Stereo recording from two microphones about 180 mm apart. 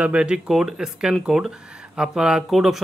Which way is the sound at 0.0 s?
5° right (ahead or behind).